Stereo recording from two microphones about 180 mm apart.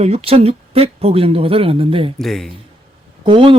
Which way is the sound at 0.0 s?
35° right (ahead or behind).